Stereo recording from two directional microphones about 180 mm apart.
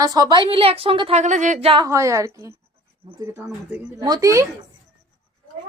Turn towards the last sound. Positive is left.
turn(degrees=-15)  # may be behind; listen again after turning